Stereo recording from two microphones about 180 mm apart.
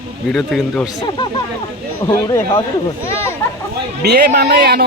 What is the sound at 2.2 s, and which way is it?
Speech, 20° left (ahead or behind).